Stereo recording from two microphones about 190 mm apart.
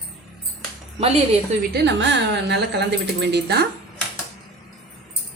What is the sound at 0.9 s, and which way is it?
Speech, 30° right (ahead or behind).